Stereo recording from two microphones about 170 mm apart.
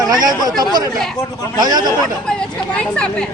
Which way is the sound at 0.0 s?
25° right (ahead or behind).